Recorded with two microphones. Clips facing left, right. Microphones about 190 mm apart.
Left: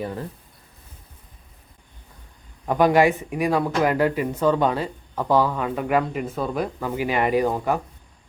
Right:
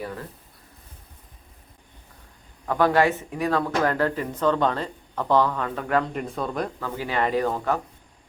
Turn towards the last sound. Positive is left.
turn(degrees=15)  # may be behind; listen again after turning